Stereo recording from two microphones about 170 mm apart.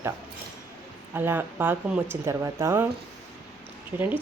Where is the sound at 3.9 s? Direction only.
10° right (ahead or behind).